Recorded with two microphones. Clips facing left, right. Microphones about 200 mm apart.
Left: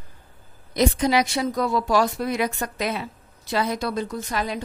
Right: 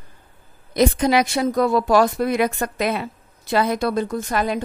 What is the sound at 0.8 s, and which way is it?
A woman's voice, 55° right (ahead or behind).